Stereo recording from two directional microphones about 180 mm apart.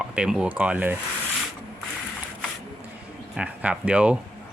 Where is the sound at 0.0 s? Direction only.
5° right (ahead or behind).